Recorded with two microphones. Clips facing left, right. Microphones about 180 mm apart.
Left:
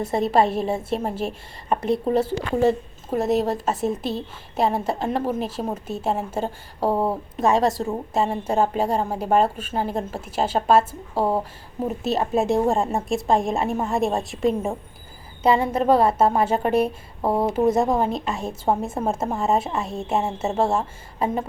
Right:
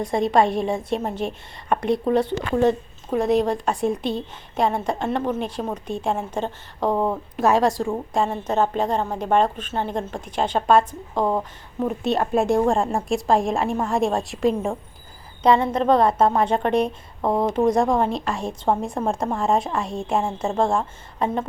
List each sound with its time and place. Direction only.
0.0 s a woman's voice: 5° left (ahead or behind)
11.3 s speech: 30° left (ahead or behind)
11.9 s a woman's voice: centre (ahead or behind)